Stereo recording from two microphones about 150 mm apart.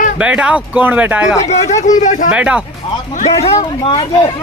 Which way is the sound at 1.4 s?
50° left (ahead or behind).